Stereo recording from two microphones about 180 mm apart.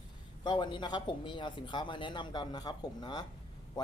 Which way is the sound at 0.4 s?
25° left (ahead or behind).